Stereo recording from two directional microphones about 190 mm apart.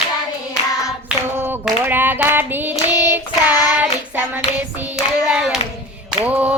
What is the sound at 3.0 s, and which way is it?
Child singing, 15° right (ahead or behind).